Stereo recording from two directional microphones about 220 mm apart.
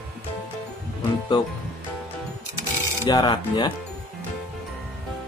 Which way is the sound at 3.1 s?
20° left (ahead or behind).